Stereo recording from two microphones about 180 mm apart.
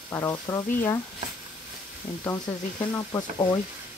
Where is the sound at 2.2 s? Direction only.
15° left (ahead or behind).